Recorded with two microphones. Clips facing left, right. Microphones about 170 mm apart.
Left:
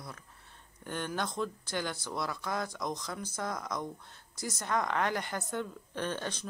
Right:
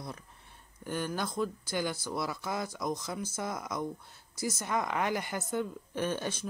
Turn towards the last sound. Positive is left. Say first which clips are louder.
# right 3 dB
turn(degrees=-10)  # may be behind; listen again after turning